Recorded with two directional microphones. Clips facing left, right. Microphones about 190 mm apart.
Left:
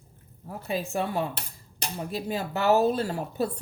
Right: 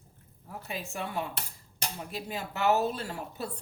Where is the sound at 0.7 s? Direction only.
35° left (ahead or behind).